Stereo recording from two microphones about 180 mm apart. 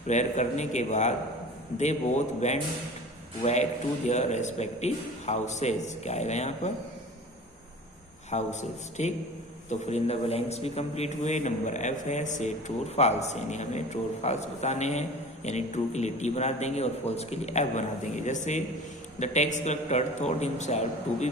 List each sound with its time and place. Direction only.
0.1 s a man's voice: 40° left (ahead or behind)
8.3 s a man's voice: 40° left (ahead or behind)